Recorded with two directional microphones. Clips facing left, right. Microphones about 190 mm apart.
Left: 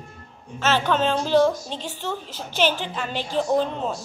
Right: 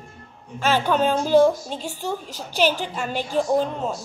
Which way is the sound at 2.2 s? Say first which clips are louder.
Right 1 dB; 40° right (ahead or behind).